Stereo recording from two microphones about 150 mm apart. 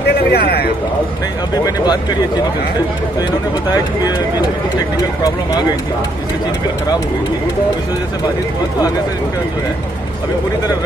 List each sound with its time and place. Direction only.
0.1 s speech: 90° left